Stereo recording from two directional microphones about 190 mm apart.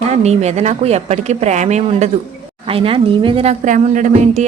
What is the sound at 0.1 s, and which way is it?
A woman's voice, 35° right (ahead or behind).